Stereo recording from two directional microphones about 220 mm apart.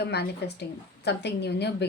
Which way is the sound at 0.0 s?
50° left (ahead or behind).